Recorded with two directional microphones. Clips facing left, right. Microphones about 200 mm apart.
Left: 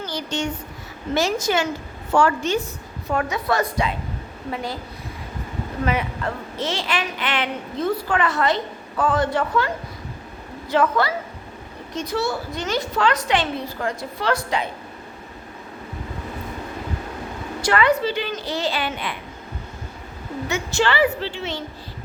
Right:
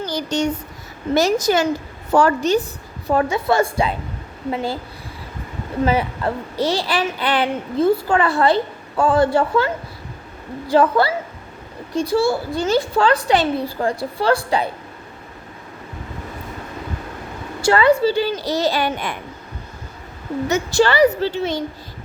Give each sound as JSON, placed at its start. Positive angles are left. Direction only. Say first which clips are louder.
{"t": 0.1, "sound": "a woman's voice", "louder": "right 6 dB", "side_deg": -40}
{"t": 5.8, "sound": "speech", "louder": "right 5 dB", "side_deg": -30}
{"t": 17.6, "sound": "speech", "louder": "right 5 dB", "side_deg": -30}
{"t": 20.5, "sound": "speech", "louder": "right 5 dB", "side_deg": -40}